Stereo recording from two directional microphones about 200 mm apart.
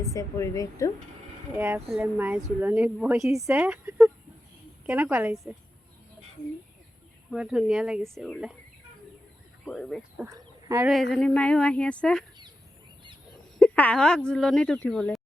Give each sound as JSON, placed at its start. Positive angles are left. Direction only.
{"t": 0.0, "sound": "a woman's voice", "side_deg": 15}
{"t": 1.5, "sound": "a woman's voice", "side_deg": -10}
{"t": 7.3, "sound": "speech", "side_deg": -5}
{"t": 9.6, "sound": "speech", "side_deg": 5}
{"t": 10.2, "sound": "a sound", "side_deg": -15}
{"t": 11.1, "sound": "speech", "side_deg": 0}
{"t": 13.6, "sound": "speech", "side_deg": 5}